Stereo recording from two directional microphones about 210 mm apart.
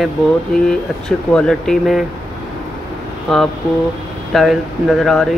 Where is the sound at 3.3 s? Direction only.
Centre (ahead or behind).